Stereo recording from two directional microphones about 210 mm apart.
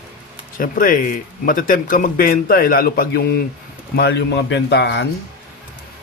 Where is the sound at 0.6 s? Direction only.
40° left (ahead or behind).